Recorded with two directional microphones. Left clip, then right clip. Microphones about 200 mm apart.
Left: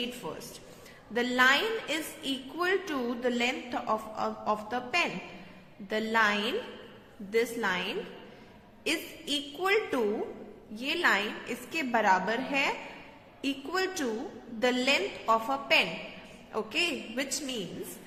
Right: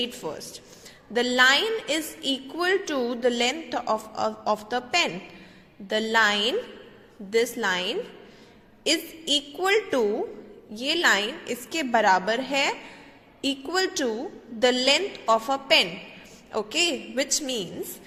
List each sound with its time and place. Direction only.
0.2 s a woman's voice: 25° right (ahead or behind)